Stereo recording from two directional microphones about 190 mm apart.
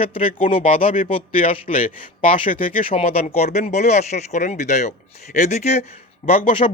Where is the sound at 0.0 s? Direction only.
30° left (ahead or behind).